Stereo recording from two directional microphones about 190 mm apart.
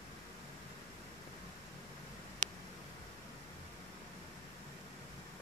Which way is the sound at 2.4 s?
40° right (ahead or behind).